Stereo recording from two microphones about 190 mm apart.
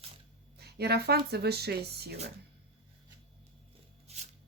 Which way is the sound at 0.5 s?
55° right (ahead or behind).